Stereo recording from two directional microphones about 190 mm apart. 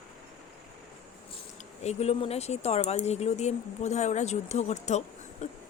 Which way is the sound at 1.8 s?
35° left (ahead or behind).